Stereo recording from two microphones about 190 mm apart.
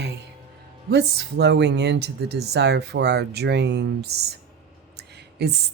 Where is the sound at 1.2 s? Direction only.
60° right (ahead or behind).